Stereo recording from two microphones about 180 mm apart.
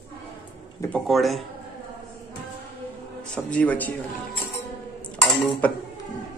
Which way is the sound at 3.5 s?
5° left (ahead or behind).